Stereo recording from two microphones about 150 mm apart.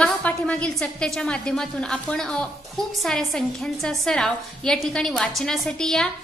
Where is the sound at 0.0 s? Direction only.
5° left (ahead or behind).